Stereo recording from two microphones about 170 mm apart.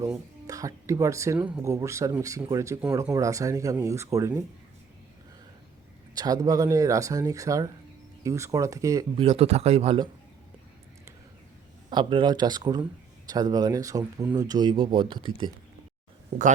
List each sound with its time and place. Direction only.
0.0 s speech: 20° right (ahead or behind)
6.1 s speech: 20° right (ahead or behind)
9.1 s speech: 35° right (ahead or behind)
11.9 s speech: 25° right (ahead or behind)